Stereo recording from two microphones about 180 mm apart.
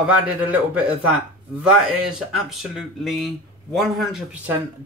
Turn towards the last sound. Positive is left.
turn(degrees=-5)  # may be behind; listen again after turning